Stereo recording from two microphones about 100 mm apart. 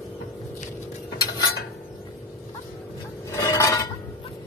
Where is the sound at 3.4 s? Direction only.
35° left (ahead or behind).